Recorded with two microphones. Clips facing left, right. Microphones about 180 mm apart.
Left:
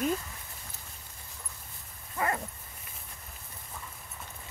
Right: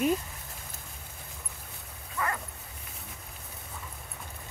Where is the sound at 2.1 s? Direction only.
30° left (ahead or behind).